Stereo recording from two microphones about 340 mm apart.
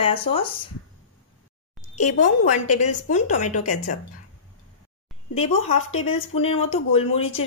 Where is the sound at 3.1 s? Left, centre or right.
Left.